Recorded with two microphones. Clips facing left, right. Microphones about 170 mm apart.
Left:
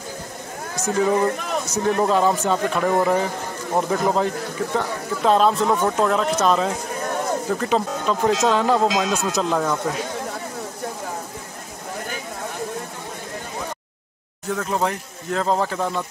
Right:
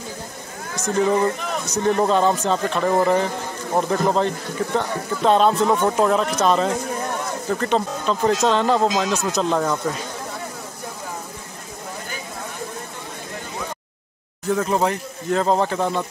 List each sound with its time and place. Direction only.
0.9 s speech: centre (ahead or behind)
14.5 s speech: 5° right (ahead or behind)